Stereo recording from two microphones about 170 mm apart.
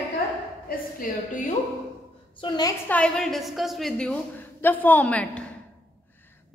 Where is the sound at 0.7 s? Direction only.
50° left (ahead or behind).